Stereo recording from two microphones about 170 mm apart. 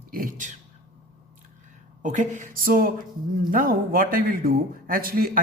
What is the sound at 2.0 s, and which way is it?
A man's voice, 45° right (ahead or behind).